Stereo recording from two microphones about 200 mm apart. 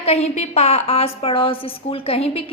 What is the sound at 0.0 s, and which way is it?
A woman's voice, 30° left (ahead or behind).